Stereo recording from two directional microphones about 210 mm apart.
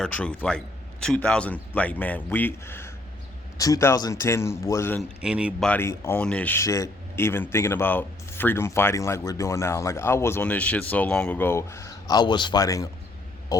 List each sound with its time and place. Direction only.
0.0 s speech: 5° left (ahead or behind)
5.2 s speech: 5° right (ahead or behind)
5.6 s speech: 10° left (ahead or behind)